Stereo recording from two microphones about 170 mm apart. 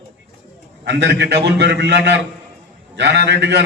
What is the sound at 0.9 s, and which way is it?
A man's voice, 90° right.